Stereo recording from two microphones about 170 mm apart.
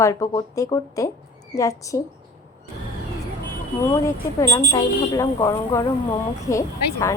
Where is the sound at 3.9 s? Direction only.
15° left (ahead or behind).